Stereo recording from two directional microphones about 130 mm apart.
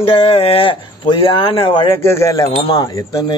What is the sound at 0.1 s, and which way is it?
Speech, 50° left (ahead or behind).